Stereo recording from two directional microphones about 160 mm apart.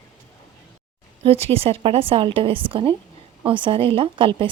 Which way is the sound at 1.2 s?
40° right (ahead or behind).